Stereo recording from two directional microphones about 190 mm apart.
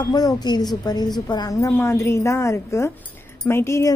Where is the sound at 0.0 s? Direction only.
20° left (ahead or behind).